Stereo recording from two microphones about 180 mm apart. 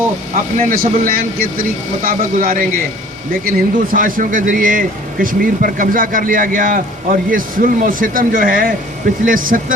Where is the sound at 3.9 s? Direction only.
50° right (ahead or behind).